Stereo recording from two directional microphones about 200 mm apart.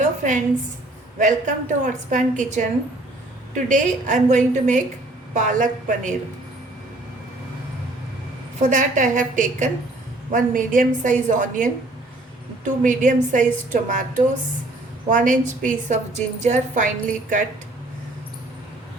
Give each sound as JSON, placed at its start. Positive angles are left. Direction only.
{"t": 0.0, "sound": "a sound", "side_deg": -40}
{"t": 1.2, "sound": "a woman's voice", "side_deg": -40}
{"t": 8.6, "sound": "a woman's voice", "side_deg": -40}